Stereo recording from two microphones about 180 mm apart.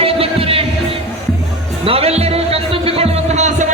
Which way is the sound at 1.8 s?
30° right (ahead or behind).